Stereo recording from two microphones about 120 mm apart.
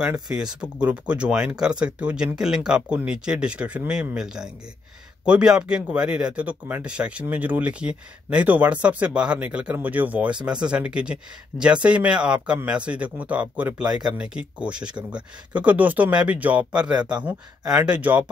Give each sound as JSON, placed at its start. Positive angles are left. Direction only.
{"t": 0.3, "sound": "speech", "side_deg": -5}
{"t": 13.8, "sound": "speech", "side_deg": -35}
{"t": 14.1, "sound": "speech", "side_deg": -10}